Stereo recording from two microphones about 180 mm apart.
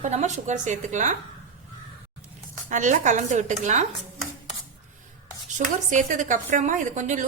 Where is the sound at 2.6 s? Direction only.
45° right (ahead or behind).